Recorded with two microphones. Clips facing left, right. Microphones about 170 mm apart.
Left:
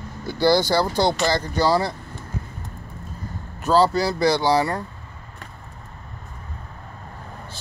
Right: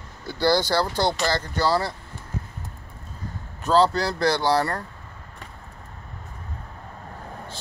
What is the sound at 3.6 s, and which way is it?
Speech, 5° left (ahead or behind).